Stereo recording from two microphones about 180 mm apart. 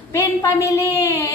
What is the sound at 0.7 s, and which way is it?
Music, 15° left (ahead or behind).